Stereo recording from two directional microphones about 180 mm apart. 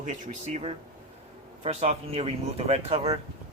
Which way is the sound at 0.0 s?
40° right (ahead or behind).